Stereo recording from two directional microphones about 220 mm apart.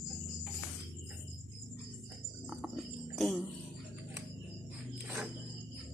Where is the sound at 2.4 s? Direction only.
Centre (ahead or behind).